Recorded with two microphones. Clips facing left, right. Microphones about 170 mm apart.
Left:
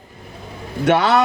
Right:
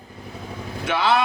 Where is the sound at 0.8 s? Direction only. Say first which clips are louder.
Left 6 dB; 60° left (ahead or behind).